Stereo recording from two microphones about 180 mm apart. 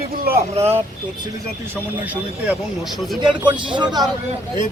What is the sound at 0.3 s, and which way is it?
Speech, 60° right (ahead or behind).